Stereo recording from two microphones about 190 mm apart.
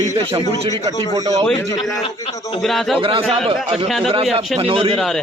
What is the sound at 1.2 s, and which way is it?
Speech, 20° right (ahead or behind).